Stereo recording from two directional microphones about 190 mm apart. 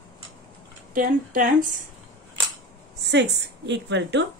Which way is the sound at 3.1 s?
65° right (ahead or behind).